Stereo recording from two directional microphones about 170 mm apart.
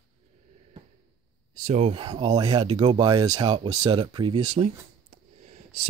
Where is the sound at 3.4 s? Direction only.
35° right (ahead or behind).